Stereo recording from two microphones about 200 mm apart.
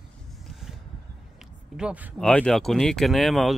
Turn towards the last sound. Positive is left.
turn(degrees=0)  # may be behind; listen again after turning